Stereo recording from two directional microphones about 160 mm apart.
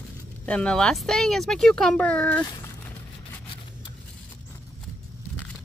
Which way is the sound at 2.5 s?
15° left (ahead or behind).